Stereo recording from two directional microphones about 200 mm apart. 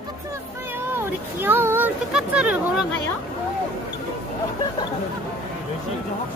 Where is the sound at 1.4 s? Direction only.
10° right (ahead or behind).